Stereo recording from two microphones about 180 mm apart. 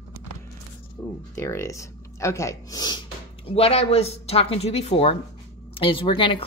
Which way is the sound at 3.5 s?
35° left (ahead or behind).